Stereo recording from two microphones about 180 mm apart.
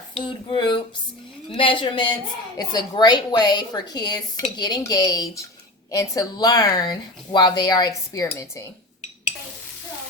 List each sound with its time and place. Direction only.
0.1 s a woman's voice: 25° left (ahead or behind)